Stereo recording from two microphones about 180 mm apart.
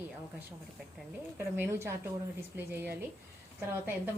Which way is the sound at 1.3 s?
10° right (ahead or behind).